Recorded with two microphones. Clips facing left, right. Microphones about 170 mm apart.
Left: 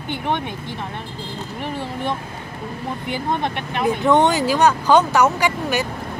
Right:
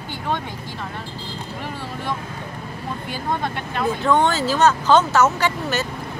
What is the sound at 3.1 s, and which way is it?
Speech, 20° left (ahead or behind).